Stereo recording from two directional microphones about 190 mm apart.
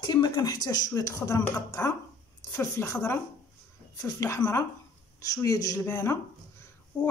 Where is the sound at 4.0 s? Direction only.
15° left (ahead or behind).